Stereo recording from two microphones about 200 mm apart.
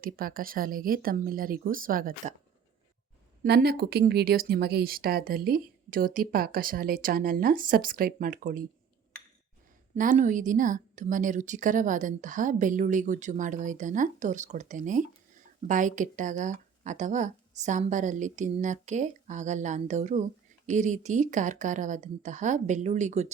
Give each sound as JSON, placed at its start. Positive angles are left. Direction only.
{"t": 0.0, "sound": "speech", "side_deg": -45}
{"t": 3.4, "sound": "speech", "side_deg": -55}
{"t": 9.9, "sound": "a woman's voice", "side_deg": -40}